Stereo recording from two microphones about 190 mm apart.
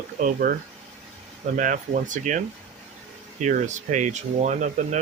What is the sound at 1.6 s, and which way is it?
Speech, 45° right (ahead or behind).